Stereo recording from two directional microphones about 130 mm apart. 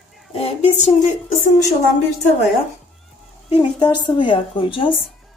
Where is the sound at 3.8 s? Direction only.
35° left (ahead or behind).